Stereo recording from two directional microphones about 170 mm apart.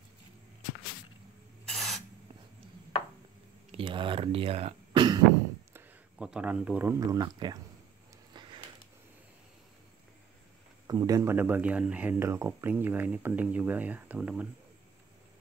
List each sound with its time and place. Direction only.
1.7 s spray: centre (ahead or behind)
3.7 s speech: 30° right (ahead or behind)
5.7 s speech: 10° right (ahead or behind); by 7.5 s 25° right (ahead or behind)
8.3 s a sound: 25° right (ahead or behind)
10.9 s speech: 20° right (ahead or behind)